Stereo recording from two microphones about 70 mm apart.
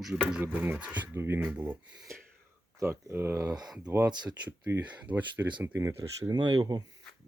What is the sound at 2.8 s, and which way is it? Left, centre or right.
Speech, right.